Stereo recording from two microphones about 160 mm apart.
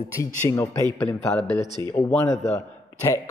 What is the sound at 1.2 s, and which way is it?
Speech, 5° left (ahead or behind).